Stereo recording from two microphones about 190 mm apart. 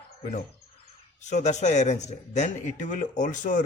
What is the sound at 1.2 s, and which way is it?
Speech, 35° left (ahead or behind).